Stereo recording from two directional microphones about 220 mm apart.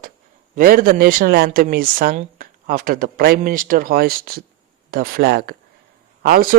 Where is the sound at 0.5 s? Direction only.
40° right (ahead or behind).